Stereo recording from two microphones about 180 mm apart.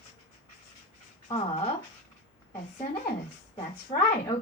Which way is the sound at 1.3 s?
35° left (ahead or behind).